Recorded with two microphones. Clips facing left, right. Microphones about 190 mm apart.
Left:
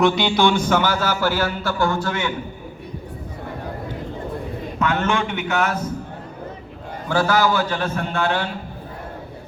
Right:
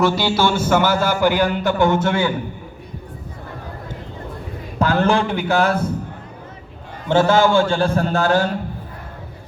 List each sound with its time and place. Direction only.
0.0 s a sound: 5° right (ahead or behind)
1.2 s a man's voice: 15° right (ahead or behind)
4.8 s a man's voice: 35° right (ahead or behind)
7.1 s a man's voice: 25° right (ahead or behind); by 8.5 s 40° right (ahead or behind)